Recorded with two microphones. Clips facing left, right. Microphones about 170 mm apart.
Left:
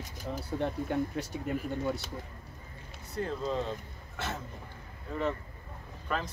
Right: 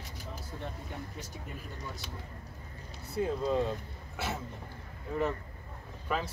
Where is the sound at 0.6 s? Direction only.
65° left (ahead or behind).